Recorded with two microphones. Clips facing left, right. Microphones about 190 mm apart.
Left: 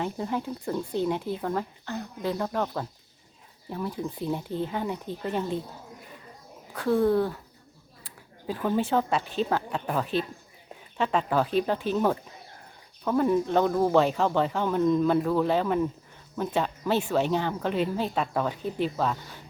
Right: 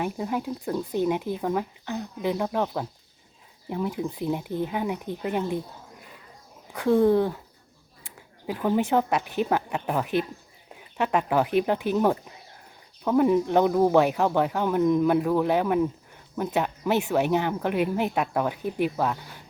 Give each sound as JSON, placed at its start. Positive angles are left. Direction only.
{"t": 0.0, "sound": "speech", "side_deg": -10}
{"t": 0.9, "sound": "speech", "side_deg": -15}
{"t": 6.7, "sound": "speech", "side_deg": -15}
{"t": 8.4, "sound": "speech", "side_deg": -15}